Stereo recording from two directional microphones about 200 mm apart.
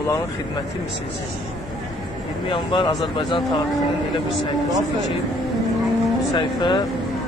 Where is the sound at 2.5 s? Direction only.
25° left (ahead or behind).